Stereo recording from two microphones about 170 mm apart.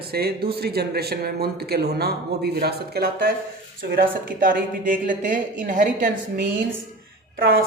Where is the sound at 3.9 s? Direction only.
55° right (ahead or behind).